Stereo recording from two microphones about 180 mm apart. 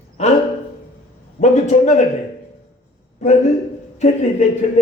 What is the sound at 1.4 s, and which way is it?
Speech, 40° left (ahead or behind).